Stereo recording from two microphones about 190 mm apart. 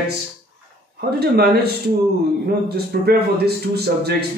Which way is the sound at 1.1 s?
55° right (ahead or behind).